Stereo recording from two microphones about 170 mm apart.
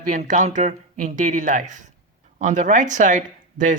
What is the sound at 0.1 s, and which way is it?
Speech, 50° right (ahead or behind).